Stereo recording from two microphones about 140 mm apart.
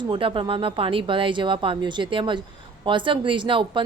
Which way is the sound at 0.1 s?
40° right (ahead or behind).